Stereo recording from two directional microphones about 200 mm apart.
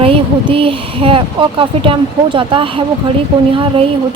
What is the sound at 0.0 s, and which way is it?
Speech, 25° right (ahead or behind).